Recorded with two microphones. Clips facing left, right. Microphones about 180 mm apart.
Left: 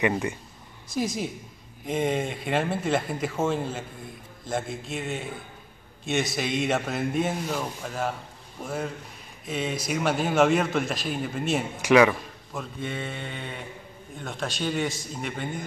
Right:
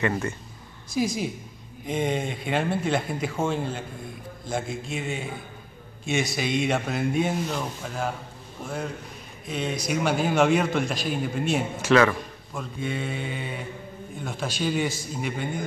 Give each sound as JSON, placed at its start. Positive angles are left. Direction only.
{"t": 0.0, "sound": "speech", "side_deg": 15}
{"t": 0.8, "sound": "a man's voice", "side_deg": 0}
{"t": 11.8, "sound": "a man's voice", "side_deg": 15}